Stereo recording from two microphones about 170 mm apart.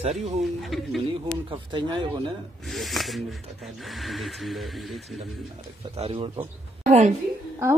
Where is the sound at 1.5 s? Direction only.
30° right (ahead or behind).